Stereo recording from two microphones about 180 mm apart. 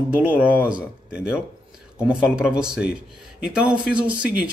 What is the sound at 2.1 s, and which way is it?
A man's voice, 5° right (ahead or behind).